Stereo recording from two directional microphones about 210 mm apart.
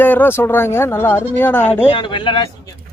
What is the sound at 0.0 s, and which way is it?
Speech, 10° left (ahead or behind).